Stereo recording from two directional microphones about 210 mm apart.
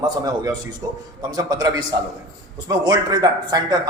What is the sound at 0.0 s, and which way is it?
A man's voice, 20° right (ahead or behind).